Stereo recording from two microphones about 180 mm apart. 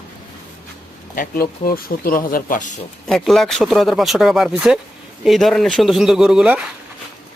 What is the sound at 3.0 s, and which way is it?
Speech, centre (ahead or behind).